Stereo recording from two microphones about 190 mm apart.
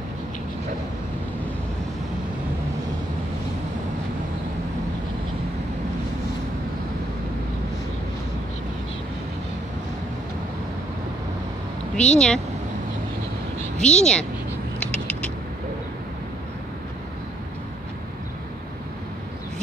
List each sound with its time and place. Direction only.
12.0 s speech: 5° left (ahead or behind)
13.7 s speech: 5° left (ahead or behind)
14.8 s a sound: 5° left (ahead or behind)